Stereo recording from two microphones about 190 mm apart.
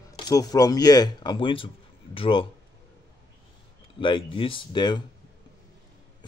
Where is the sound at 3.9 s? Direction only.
25° left (ahead or behind).